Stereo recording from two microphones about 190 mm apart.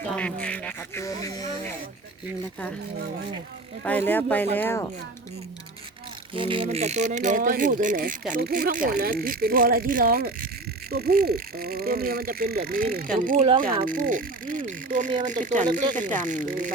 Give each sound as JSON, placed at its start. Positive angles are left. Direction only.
{"t": 0.1, "sound": "speech", "side_deg": 5}
{"t": 3.8, "sound": "speech", "side_deg": 10}
{"t": 6.3, "sound": "speech", "side_deg": -25}